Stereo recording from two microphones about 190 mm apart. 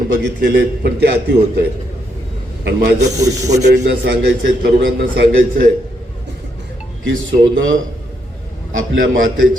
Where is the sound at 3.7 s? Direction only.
55° right (ahead or behind).